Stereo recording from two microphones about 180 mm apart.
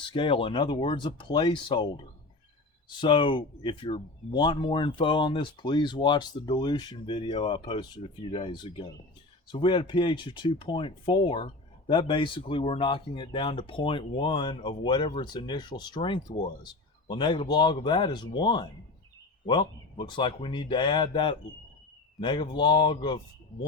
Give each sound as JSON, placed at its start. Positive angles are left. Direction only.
{"t": 0.1, "sound": "speech", "side_deg": 30}
{"t": 3.0, "sound": "speech", "side_deg": 25}